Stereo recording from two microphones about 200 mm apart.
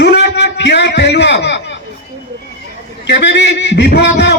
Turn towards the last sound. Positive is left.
turn(degrees=60)  # may be behind; listen again after turning